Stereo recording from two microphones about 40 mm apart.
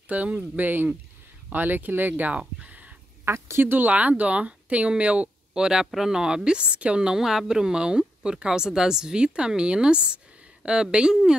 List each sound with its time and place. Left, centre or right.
0.1 s speech: right
2.3 s a sound: right
3.3 s speech: right
3.7 s speech: right
5.5 s speech: centre
7.0 s speech: centre